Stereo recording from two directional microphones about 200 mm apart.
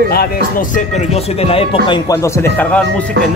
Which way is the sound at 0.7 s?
30° left (ahead or behind).